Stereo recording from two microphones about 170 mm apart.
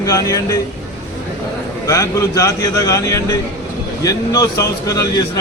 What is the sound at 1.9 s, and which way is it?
Speech, 20° left (ahead or behind).